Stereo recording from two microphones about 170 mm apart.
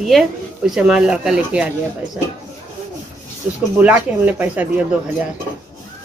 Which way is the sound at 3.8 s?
10° right (ahead or behind).